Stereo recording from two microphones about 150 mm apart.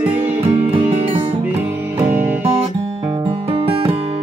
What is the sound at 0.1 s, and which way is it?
Music, 35° right (ahead or behind).